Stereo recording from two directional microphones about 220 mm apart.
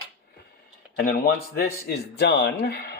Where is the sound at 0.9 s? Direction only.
40° left (ahead or behind).